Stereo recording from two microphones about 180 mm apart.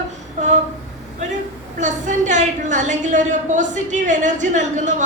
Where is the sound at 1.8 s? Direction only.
45° right (ahead or behind).